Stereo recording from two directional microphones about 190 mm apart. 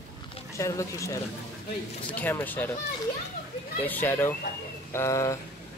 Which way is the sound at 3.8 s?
10° left (ahead or behind).